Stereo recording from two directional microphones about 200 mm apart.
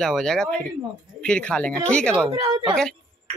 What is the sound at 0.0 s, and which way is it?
Speech, centre (ahead or behind).